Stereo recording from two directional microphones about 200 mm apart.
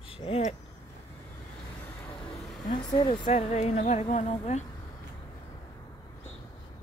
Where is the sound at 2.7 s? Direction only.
25° left (ahead or behind).